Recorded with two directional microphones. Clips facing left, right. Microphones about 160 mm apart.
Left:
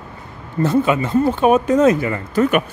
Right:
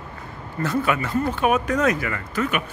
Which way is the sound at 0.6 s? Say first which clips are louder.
Left 7 dB; 25° left (ahead or behind).